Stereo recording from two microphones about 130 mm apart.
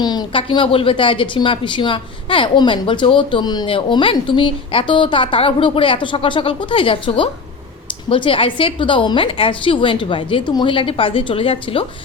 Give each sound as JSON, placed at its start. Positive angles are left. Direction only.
{"t": 0.0, "sound": "a woman's voice", "side_deg": 35}